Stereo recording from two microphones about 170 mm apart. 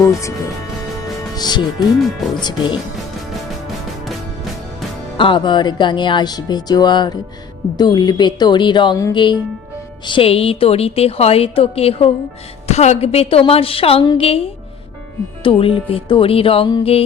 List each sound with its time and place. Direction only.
0.0 s speech: 20° left (ahead or behind)
1.4 s speech: 25° left (ahead or behind)
5.1 s a woman's voice: 30° left (ahead or behind)
15.4 s a woman's voice: 30° left (ahead or behind)